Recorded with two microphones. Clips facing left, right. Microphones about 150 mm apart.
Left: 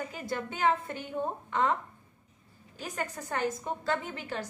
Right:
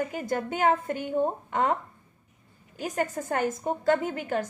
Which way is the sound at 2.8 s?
45° right (ahead or behind).